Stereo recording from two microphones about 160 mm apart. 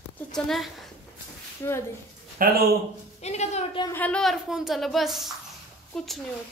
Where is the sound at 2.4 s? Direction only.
60° right (ahead or behind).